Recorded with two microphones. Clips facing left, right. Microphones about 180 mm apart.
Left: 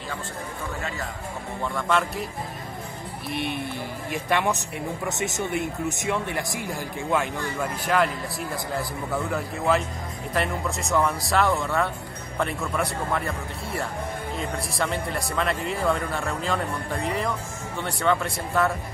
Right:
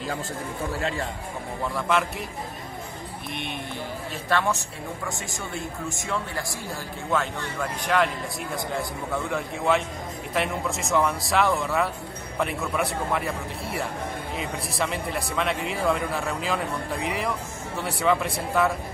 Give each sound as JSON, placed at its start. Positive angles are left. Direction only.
{"t": 1.8, "sound": "speech", "side_deg": 0}
{"t": 3.3, "sound": "speech", "side_deg": 5}
{"t": 4.1, "sound": "speech", "side_deg": 15}